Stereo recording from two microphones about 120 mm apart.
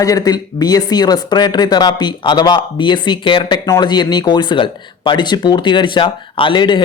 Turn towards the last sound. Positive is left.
turn(degrees=40)  # may be behind; listen again after turning